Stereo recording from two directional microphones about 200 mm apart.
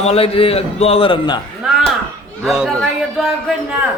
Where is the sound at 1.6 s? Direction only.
5° right (ahead or behind).